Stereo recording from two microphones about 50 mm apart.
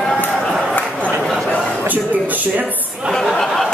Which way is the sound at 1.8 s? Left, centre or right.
Right.